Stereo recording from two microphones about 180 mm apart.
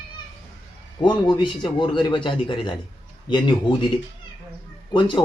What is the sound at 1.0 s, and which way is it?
A man's voice, 25° left (ahead or behind).